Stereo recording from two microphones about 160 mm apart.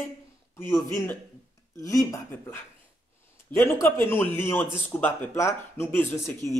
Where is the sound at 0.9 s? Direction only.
15° left (ahead or behind).